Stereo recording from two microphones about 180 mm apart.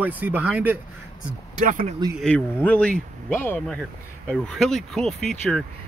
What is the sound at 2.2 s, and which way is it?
Speech, 5° left (ahead or behind).